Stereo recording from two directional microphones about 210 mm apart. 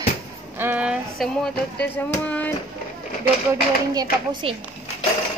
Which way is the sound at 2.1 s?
5° left (ahead or behind).